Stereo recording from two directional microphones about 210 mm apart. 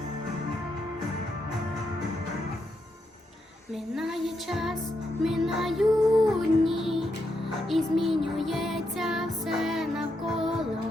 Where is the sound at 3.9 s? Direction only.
Centre (ahead or behind).